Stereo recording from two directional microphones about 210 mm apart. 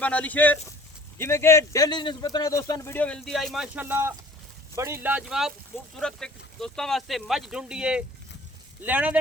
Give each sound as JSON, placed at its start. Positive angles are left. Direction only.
{"t": 0.0, "sound": "speech", "side_deg": 5}
{"t": 5.0, "sound": "speech", "side_deg": -5}